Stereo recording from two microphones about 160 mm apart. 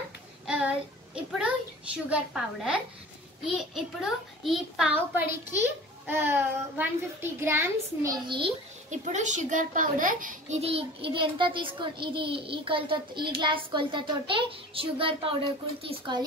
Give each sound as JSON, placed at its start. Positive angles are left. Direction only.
{"t": 0.5, "sound": "child singing", "side_deg": -5}
{"t": 2.0, "sound": "a child's voice", "side_deg": -5}
{"t": 9.0, "sound": "a child's voice", "side_deg": -50}
{"t": 10.6, "sound": "a child's voice", "side_deg": -35}